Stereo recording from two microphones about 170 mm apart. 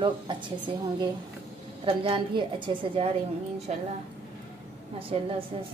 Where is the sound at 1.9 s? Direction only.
30° right (ahead or behind).